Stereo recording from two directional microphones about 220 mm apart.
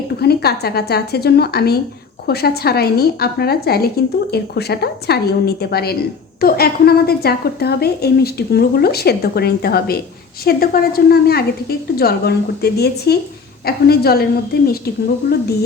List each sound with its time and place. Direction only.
0.2 s speech: 45° left (ahead or behind)